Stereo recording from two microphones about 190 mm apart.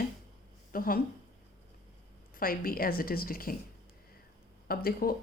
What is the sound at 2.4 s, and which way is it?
Speech, 50° left (ahead or behind).